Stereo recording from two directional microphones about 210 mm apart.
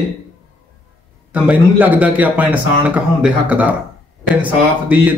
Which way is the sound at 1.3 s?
5° right (ahead or behind).